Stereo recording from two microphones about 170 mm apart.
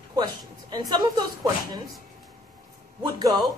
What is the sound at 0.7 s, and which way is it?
Speech, 25° right (ahead or behind).